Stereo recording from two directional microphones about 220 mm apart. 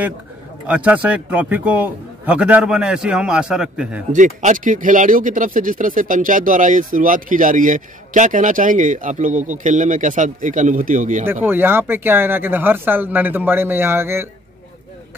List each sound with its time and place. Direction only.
0.7 s a man's voice: 5° right (ahead or behind)
4.1 s speech: 35° right (ahead or behind)
11.4 s speech: 10° right (ahead or behind)